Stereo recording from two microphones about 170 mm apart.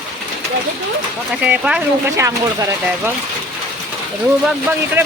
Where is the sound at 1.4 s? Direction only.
5° right (ahead or behind).